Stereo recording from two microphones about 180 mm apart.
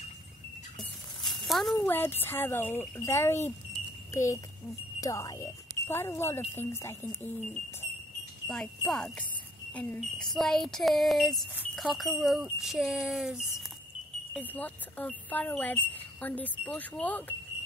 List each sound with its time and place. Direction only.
0.7 s a sound: centre (ahead or behind)
1.9 s speech: 10° left (ahead or behind)
8.5 s speech: centre (ahead or behind)
14.3 s speech: 10° left (ahead or behind)